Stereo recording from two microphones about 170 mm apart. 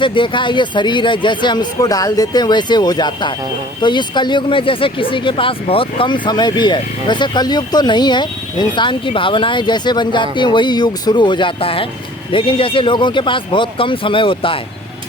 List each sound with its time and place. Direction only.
0.0 s speech: 30° left (ahead or behind)